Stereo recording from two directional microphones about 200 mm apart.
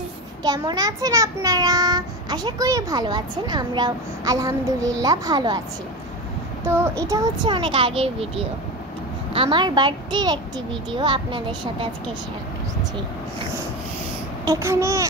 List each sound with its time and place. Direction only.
0.4 s a child's voice: 20° right (ahead or behind)
6.6 s a child's voice: 10° right (ahead or behind)
14.4 s speech: 15° right (ahead or behind)